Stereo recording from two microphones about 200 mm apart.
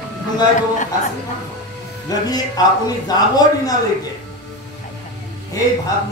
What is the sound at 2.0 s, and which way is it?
A man's voice, 20° left (ahead or behind).